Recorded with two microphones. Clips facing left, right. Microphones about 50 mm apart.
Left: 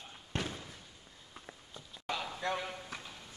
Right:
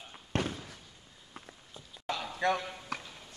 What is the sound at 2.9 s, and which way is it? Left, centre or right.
Clip-clop, right.